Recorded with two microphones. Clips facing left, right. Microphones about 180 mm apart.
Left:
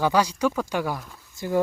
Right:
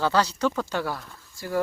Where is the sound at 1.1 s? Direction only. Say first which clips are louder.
Left 4 dB; 20° left (ahead or behind).